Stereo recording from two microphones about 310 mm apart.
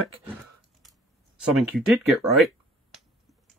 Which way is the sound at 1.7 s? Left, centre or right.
Centre.